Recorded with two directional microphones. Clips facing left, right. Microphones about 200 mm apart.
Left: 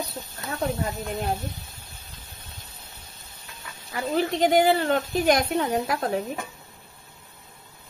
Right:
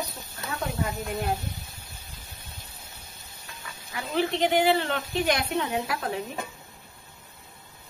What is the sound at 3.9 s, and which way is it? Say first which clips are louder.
Speech: left 2 dB; 40° left (ahead or behind).